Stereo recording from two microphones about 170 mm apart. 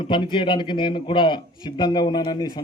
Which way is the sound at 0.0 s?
30° left (ahead or behind).